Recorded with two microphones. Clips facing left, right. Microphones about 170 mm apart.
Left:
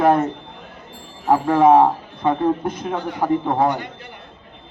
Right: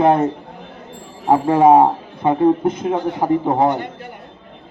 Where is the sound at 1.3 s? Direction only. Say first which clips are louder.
Right 2 dB; 25° right (ahead or behind).